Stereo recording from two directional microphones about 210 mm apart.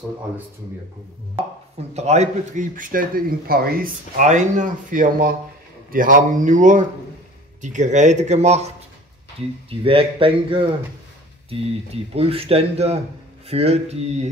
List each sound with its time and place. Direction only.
2.0 s speech: 35° right (ahead or behind)